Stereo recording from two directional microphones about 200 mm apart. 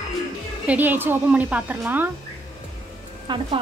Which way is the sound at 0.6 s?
10° right (ahead or behind).